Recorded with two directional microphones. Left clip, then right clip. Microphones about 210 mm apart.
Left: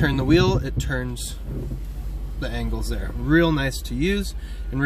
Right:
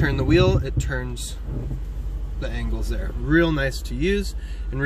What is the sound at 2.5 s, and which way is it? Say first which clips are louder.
Speech: left 2 dB; 30° left (ahead or behind).